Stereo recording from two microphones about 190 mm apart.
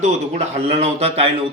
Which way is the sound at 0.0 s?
35° right (ahead or behind).